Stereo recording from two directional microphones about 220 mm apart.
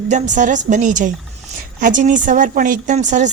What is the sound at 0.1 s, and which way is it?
A woman's voice, 35° right (ahead or behind).